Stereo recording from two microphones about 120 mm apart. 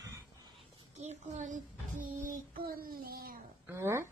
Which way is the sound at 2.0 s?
90° right.